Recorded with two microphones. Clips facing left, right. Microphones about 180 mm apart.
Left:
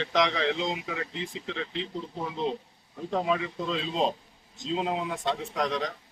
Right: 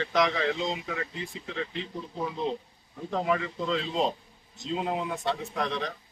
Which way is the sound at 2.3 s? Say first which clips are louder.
Left 2 dB; 20° left (ahead or behind).